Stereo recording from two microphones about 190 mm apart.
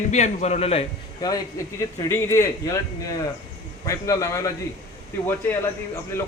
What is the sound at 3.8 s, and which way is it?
Speech, 15° left (ahead or behind).